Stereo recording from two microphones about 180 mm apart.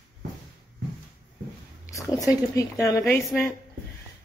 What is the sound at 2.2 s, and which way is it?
A woman's voice, 20° left (ahead or behind).